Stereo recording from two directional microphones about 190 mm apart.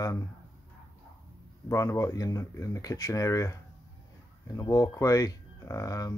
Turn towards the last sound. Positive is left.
turn(degrees=15)  # may be behind; listen again after turning